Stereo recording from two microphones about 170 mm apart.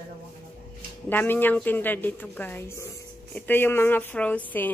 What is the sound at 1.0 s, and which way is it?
A woman's voice, 10° left (ahead or behind).